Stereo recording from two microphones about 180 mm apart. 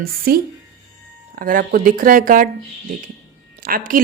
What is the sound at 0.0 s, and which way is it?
A woman's voice, 55° right (ahead or behind).